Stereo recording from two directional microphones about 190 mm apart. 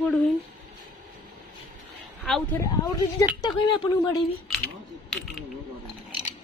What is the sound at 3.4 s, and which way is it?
Speech, 20° left (ahead or behind).